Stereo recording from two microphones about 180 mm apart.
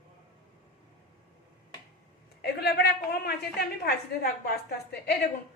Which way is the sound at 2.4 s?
60° left (ahead or behind).